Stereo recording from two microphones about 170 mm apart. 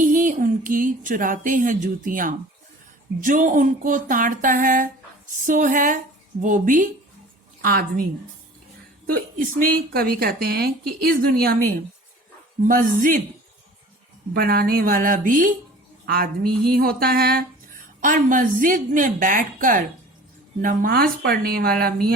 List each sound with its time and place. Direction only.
0.0 s a woman's voice: 50° right (ahead or behind)
9.0 s a woman's voice: 60° right (ahead or behind)
14.3 s a woman's voice: 65° right (ahead or behind)
18.0 s a woman's voice: 50° right (ahead or behind)